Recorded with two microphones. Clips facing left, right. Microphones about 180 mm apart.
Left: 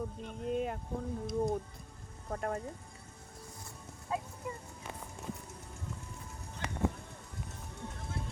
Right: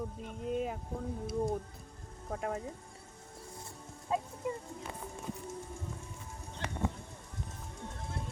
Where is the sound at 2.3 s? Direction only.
5° right (ahead or behind).